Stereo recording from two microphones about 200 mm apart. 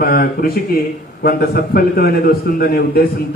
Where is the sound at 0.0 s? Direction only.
45° left (ahead or behind).